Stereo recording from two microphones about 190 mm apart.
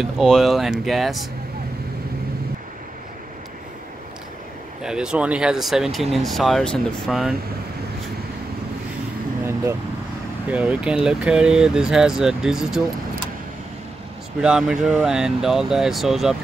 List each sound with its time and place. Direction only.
0.0 s speech: centre (ahead or behind)
4.8 s speech: 5° right (ahead or behind)
10.5 s speech: 5° right (ahead or behind)
14.4 s speech: 5° right (ahead or behind)